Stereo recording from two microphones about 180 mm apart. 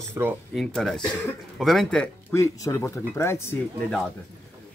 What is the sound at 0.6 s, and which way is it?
Speech, centre (ahead or behind).